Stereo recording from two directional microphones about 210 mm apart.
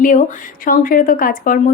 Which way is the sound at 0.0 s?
40° left (ahead or behind).